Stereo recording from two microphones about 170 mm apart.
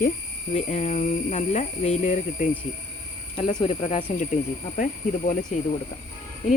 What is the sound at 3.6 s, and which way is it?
Speech, 35° left (ahead or behind).